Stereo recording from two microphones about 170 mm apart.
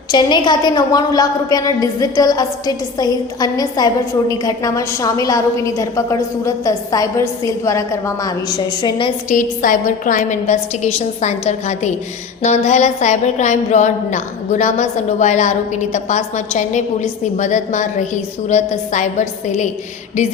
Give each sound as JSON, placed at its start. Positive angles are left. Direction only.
{"t": 0.1, "sound": "a woman's voice", "side_deg": 25}
{"t": 9.3, "sound": "a woman's voice", "side_deg": 50}